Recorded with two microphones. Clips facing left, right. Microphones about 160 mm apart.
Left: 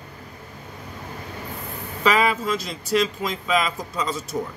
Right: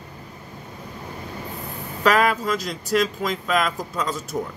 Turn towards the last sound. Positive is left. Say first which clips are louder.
# even
turn(degrees=0)  # may be behind; listen again after turning